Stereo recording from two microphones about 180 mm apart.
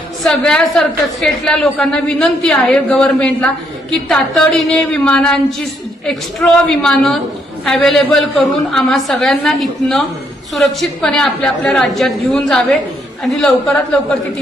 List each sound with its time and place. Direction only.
0.3 s a woman's voice: 5° left (ahead or behind)